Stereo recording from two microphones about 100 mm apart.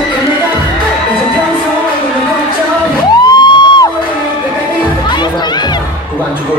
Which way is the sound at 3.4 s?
50° left (ahead or behind).